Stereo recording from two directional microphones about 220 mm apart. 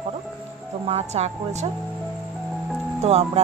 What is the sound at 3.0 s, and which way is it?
Speech, 30° right (ahead or behind).